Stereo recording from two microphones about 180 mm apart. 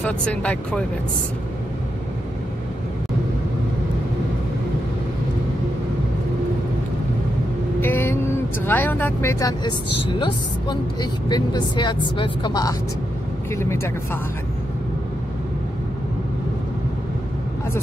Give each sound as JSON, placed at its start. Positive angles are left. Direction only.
{"t": 0.0, "sound": "speech", "side_deg": 5}
{"t": 7.8, "sound": "vehicle", "side_deg": 10}
{"t": 8.6, "sound": "speech", "side_deg": 10}